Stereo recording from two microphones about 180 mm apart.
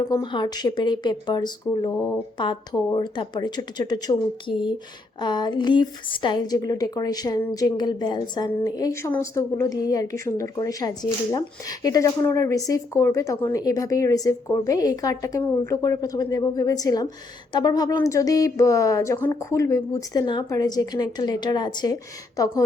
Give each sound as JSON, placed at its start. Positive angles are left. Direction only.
{"t": 0.0, "sound": "speech", "side_deg": 25}